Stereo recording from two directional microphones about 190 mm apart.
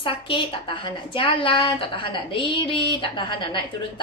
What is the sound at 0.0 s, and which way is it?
A woman's voice, 25° left (ahead or behind).